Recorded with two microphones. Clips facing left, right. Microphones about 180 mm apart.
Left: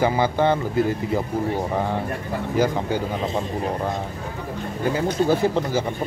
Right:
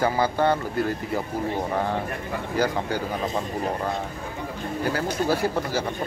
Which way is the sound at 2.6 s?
20° left (ahead or behind).